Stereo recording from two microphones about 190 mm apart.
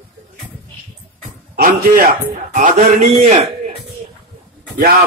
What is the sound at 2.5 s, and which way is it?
Speech, 40° right (ahead or behind).